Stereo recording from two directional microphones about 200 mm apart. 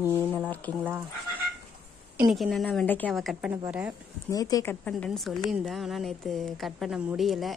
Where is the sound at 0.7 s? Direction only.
10° right (ahead or behind).